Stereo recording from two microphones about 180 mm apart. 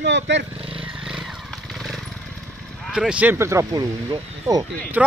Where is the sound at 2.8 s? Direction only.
5° right (ahead or behind); by 4.6 s 20° right (ahead or behind).